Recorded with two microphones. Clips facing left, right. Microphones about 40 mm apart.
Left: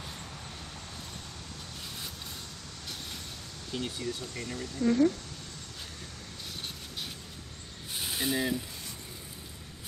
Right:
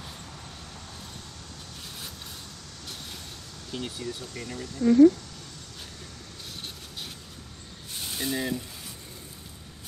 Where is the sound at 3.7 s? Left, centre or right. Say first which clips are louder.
Even; centre.